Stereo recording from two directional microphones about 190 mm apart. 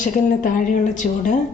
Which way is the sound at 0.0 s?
40° left (ahead or behind).